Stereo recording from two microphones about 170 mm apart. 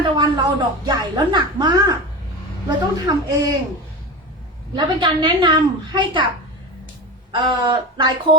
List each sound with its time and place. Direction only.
0.0 s a woman's voice: 25° right (ahead or behind)
4.7 s a woman's voice: 30° right (ahead or behind)
7.3 s a woman's voice: 25° right (ahead or behind)